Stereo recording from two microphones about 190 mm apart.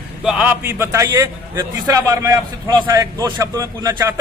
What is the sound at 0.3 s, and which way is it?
A man's voice, 5° right (ahead or behind).